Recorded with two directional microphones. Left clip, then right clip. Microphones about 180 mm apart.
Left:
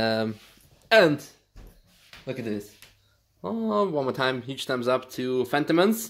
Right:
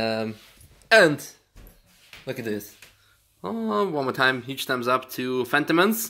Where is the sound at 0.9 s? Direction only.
Centre (ahead or behind).